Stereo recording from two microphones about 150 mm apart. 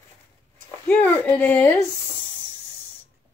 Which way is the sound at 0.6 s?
10° left (ahead or behind).